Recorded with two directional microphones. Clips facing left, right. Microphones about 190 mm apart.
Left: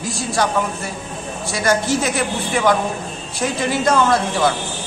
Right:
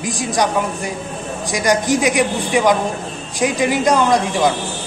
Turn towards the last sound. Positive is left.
turn(degrees=-15)  # may be behind; listen again after turning